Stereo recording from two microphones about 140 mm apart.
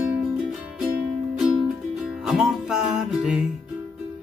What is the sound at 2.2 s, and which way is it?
Music, 5° right (ahead or behind).